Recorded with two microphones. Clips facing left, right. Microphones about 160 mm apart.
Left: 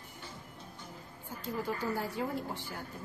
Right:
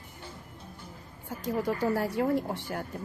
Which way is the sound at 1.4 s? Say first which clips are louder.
Right 7 dB; 80° right.